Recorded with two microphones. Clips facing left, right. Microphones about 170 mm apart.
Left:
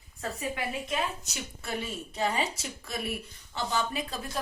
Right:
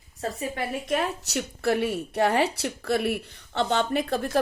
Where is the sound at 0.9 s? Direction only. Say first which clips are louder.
Right 6 dB; 65° right (ahead or behind).